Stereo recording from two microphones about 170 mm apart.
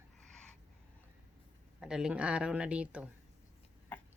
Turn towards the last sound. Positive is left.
turn(degrees=-5)  # may be behind; listen again after turning